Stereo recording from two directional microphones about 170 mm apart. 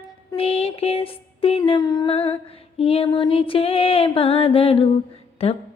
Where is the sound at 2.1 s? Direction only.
35° left (ahead or behind).